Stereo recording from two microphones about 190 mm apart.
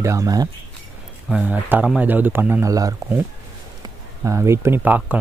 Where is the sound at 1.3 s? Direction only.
5° right (ahead or behind).